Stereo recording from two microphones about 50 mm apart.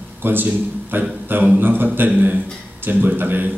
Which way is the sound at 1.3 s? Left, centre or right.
Right.